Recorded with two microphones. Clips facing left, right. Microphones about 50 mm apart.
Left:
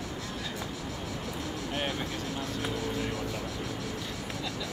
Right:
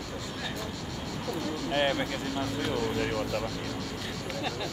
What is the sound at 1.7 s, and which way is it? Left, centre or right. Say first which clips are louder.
Speech: right 7 dB; right.